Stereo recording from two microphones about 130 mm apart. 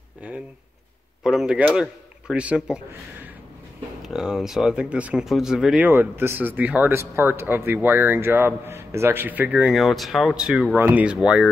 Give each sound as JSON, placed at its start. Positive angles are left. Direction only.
{"t": 1.2, "sound": "speech", "side_deg": -5}
{"t": 4.0, "sound": "speech", "side_deg": -5}
{"t": 9.8, "sound": "speech", "side_deg": 0}